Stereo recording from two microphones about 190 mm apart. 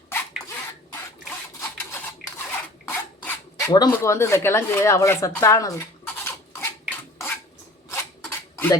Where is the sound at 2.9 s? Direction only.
10° left (ahead or behind).